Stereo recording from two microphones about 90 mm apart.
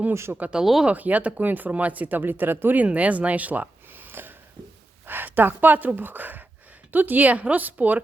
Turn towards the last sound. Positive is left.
turn(degrees=-20)  # may be behind; listen again after turning